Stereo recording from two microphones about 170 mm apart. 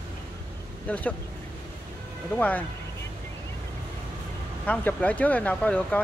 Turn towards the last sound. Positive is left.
turn(degrees=10)  # may be behind; listen again after turning